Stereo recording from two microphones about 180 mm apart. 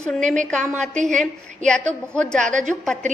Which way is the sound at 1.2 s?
5° left (ahead or behind).